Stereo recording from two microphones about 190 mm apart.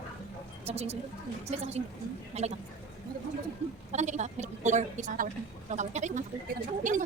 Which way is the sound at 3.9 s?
40° right (ahead or behind).